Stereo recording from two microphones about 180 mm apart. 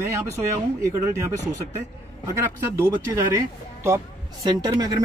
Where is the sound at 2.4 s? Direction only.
15° right (ahead or behind).